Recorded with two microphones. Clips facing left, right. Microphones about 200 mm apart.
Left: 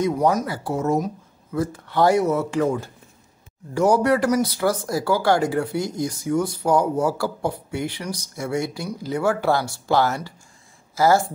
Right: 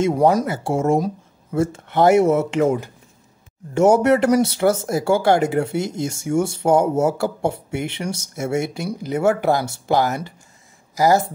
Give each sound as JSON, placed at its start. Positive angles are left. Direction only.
{"t": 0.0, "sound": "a woman's voice", "side_deg": -30}